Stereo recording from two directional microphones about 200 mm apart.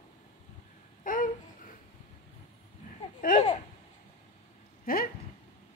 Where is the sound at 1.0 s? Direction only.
45° left (ahead or behind).